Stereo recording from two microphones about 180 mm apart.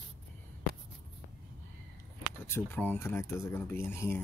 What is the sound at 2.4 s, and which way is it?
Speech, 10° left (ahead or behind).